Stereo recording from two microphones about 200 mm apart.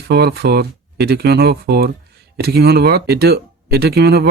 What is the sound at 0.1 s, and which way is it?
Speech, 55° right (ahead or behind).